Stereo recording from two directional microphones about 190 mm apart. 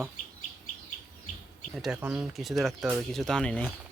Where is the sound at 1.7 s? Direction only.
5° right (ahead or behind).